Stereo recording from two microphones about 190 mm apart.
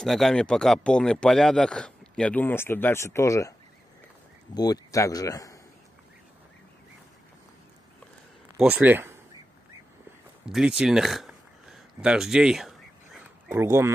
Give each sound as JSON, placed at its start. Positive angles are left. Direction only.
{"t": 0.0, "sound": "speech", "side_deg": 0}
{"t": 4.6, "sound": "speech", "side_deg": 20}
{"t": 8.5, "sound": "speech", "side_deg": -10}
{"t": 10.4, "sound": "a sound", "side_deg": -5}
{"t": 13.5, "sound": "speech", "side_deg": -15}